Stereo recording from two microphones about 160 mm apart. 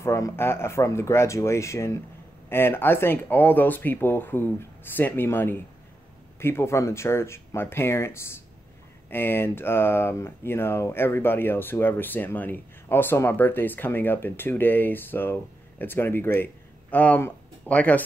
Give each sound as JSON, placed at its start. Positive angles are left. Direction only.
{"t": 0.0, "sound": "speech", "side_deg": 15}